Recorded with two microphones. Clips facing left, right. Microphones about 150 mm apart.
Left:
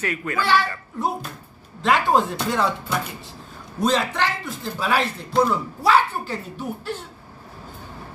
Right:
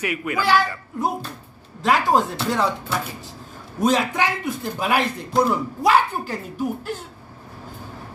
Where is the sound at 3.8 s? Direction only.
10° right (ahead or behind).